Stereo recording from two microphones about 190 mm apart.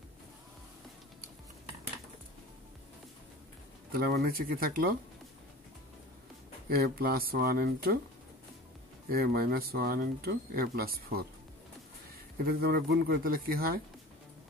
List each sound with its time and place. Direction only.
3.9 s speech: 50° right (ahead or behind)
6.7 s speech: 50° right (ahead or behind)
9.1 s speech: 50° right (ahead or behind)
12.4 s speech: 55° right (ahead or behind)